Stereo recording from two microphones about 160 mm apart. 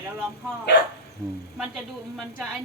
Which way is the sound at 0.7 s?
90° left.